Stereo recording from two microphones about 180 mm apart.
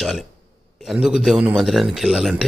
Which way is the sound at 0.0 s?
Centre (ahead or behind).